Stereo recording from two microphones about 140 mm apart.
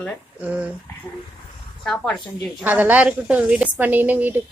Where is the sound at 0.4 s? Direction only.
10° right (ahead or behind).